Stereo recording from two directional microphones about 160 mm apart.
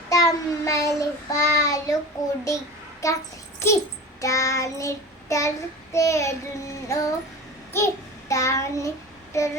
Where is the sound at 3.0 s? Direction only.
20° left (ahead or behind).